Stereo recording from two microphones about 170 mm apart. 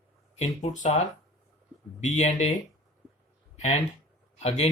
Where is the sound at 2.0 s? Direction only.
45° left (ahead or behind).